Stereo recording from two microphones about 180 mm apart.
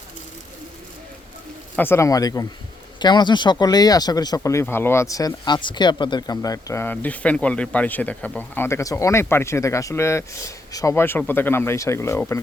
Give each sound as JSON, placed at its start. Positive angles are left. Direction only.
{"t": 1.7, "sound": "speech", "side_deg": 10}